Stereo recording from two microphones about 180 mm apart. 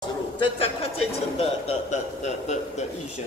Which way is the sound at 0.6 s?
35° left (ahead or behind).